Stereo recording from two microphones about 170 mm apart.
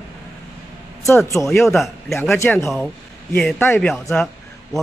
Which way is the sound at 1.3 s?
15° left (ahead or behind).